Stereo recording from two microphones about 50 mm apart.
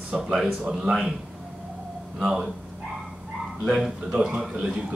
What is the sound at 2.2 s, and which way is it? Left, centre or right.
Speech, centre.